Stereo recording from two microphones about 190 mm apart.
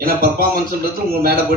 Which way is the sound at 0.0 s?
50° right (ahead or behind).